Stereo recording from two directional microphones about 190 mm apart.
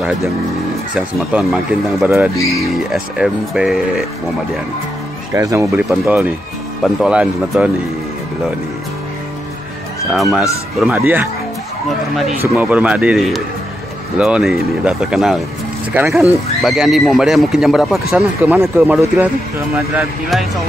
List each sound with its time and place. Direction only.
0.9 s speech: 5° right (ahead or behind)
2.3 s speech: 15° left (ahead or behind)
2.9 s speech: 5° right (ahead or behind)
5.3 s speech: 15° right (ahead or behind)
10.1 s speech: centre (ahead or behind)
12.4 s speech: 10° right (ahead or behind)